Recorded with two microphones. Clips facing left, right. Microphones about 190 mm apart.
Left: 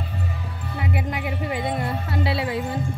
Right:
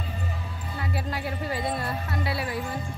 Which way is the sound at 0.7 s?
20° left (ahead or behind).